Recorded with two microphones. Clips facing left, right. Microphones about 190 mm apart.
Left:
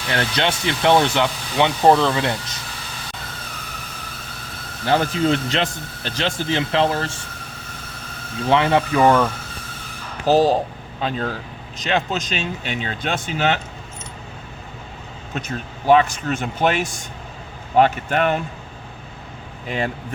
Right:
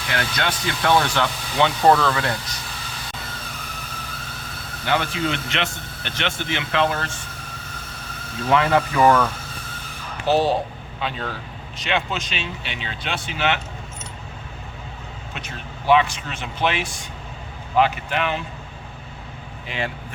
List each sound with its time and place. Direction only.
0.1 s speech: 30° left (ahead or behind)
4.9 s speech: 35° left (ahead or behind)
8.4 s speech: 25° left (ahead or behind)
10.2 s speech: 40° left (ahead or behind)
15.4 s speech: 40° left (ahead or behind)
19.6 s speech: 45° left (ahead or behind)